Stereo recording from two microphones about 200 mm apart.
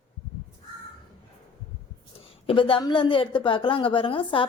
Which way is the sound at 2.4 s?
25° left (ahead or behind).